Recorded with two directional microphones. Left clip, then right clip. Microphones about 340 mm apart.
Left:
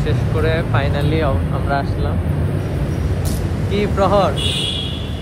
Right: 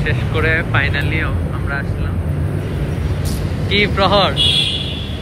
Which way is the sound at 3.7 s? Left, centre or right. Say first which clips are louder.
Right 2 dB; centre.